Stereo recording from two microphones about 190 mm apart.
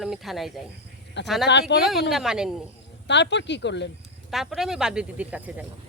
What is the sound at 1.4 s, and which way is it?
Speech, 65° left (ahead or behind).